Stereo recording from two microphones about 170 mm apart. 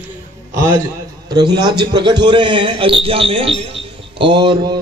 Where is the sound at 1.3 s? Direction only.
25° right (ahead or behind).